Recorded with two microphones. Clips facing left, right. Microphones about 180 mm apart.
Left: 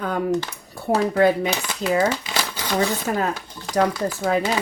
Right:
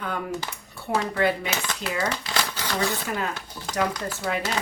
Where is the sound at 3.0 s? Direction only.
40° left (ahead or behind).